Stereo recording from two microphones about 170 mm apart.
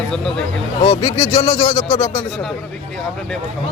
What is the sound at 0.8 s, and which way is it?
A man's voice, 35° left (ahead or behind).